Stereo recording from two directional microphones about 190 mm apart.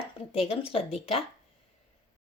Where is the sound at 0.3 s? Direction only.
30° left (ahead or behind).